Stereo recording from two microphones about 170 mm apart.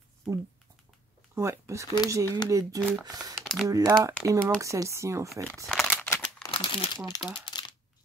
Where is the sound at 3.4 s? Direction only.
Centre (ahead or behind).